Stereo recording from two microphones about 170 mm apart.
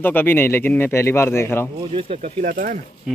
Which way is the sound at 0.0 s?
10° left (ahead or behind).